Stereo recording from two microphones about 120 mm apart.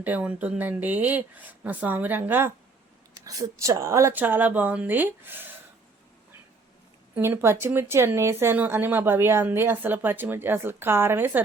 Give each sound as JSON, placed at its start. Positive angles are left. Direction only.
{"t": 0.0, "sound": "speech", "side_deg": -15}
{"t": 3.2, "sound": "speech", "side_deg": -30}
{"t": 7.2, "sound": "speech", "side_deg": -20}